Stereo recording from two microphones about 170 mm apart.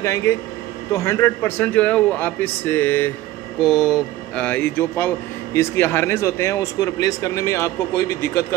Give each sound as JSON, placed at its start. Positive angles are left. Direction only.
{"t": 0.0, "sound": "speech", "side_deg": 15}
{"t": 3.6, "sound": "speech", "side_deg": 0}
{"t": 4.5, "sound": "speech", "side_deg": 10}